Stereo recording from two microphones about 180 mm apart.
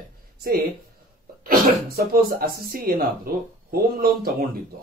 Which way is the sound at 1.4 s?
55° right (ahead or behind).